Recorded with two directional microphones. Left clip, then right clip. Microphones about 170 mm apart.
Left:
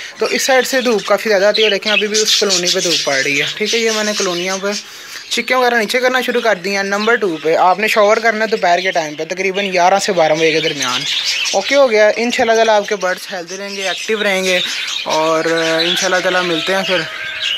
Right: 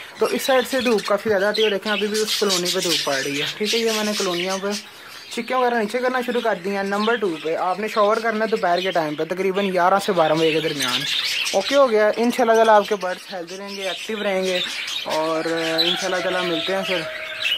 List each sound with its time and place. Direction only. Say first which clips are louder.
0.5 s speech: left 6 dB; 5° left (ahead or behind)
8.4 s a man's voice: left 6 dB; centre (ahead or behind)
11.7 s speech: left 6 dB; 5° right (ahead or behind)
13.8 s speech: left 8 dB; 20° left (ahead or behind)